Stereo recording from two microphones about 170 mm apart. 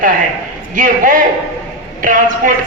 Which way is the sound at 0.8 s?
55° right (ahead or behind).